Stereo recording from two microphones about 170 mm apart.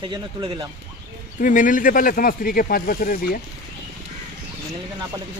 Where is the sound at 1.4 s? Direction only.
50° left (ahead or behind).